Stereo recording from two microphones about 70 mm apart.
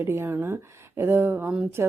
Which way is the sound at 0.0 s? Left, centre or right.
Right.